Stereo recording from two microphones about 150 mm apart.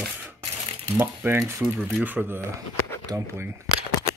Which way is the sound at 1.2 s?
15° right (ahead or behind).